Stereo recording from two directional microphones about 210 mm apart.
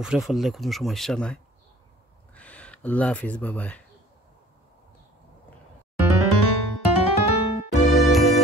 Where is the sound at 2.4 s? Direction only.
5° left (ahead or behind).